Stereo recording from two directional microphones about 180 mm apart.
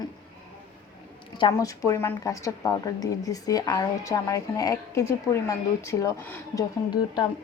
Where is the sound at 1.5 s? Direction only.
15° left (ahead or behind).